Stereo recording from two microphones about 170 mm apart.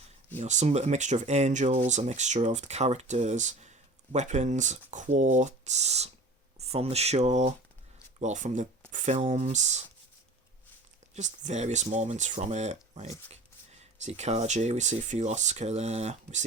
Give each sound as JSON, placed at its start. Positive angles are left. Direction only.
{"t": 0.3, "sound": "speech", "side_deg": -45}
{"t": 11.1, "sound": "speech", "side_deg": -40}